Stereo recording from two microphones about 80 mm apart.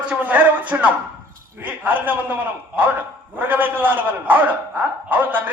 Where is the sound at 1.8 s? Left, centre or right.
Right.